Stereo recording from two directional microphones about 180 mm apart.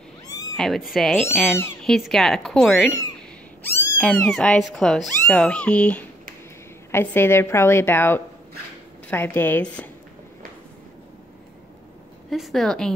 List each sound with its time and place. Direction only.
0.3 s cat: 20° left (ahead or behind)
0.6 s a woman's voice: centre (ahead or behind)
12.3 s speech: centre (ahead or behind)